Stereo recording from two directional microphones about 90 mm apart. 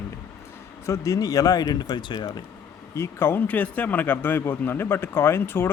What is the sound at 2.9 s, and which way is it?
Speech, 30° left (ahead or behind).